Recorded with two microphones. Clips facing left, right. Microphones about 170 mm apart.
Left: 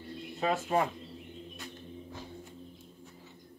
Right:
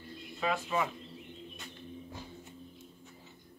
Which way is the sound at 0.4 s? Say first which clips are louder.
Left 3 dB; 45° left (ahead or behind).